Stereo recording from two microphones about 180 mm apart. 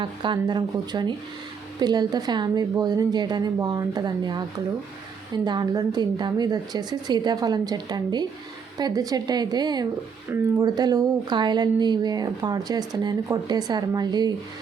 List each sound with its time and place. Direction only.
0.0 s speech: 25° right (ahead or behind)